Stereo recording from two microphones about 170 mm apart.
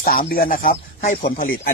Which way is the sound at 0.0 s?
60° left (ahead or behind).